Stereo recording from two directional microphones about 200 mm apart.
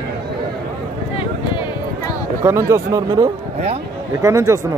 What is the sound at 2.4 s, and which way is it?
A man's voice, 15° right (ahead or behind).